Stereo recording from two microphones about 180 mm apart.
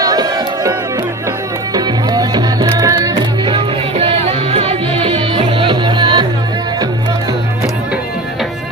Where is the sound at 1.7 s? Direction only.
20° right (ahead or behind).